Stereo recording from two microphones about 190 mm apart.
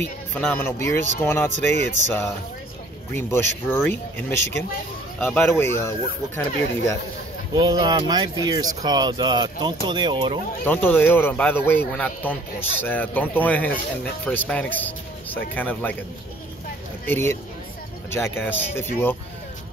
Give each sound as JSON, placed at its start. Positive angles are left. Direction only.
{"t": 0.3, "sound": "speech", "side_deg": 10}
{"t": 1.5, "sound": "speech", "side_deg": -40}
{"t": 3.1, "sound": "speech", "side_deg": 15}
{"t": 7.5, "sound": "speech", "side_deg": -20}
{"t": 10.6, "sound": "speech", "side_deg": 10}
{"t": 17.0, "sound": "speech", "side_deg": 10}